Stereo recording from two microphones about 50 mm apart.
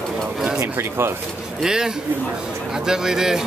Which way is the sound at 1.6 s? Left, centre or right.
Centre.